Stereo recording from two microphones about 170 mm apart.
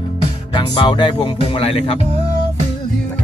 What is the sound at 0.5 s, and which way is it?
Music, 30° left (ahead or behind).